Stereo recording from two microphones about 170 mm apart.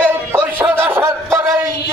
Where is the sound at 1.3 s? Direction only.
15° right (ahead or behind).